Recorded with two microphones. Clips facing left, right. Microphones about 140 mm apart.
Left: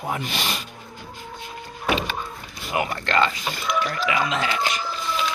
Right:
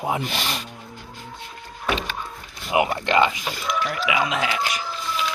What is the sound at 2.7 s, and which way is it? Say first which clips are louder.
Speech: right 4 dB; 20° right (ahead or behind).